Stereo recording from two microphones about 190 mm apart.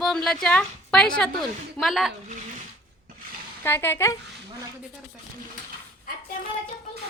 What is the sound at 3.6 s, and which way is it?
Speech, 10° left (ahead or behind).